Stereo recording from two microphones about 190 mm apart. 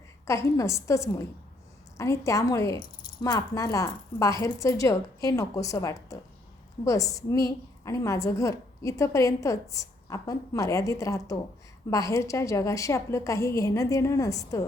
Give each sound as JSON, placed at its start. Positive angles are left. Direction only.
{"t": 0.3, "sound": "a woman's voice", "side_deg": 15}